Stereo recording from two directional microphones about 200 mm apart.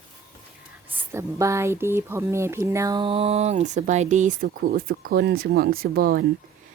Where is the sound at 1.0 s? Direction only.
15° right (ahead or behind).